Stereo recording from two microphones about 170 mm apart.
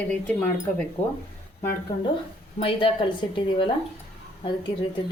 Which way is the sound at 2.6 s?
30° left (ahead or behind).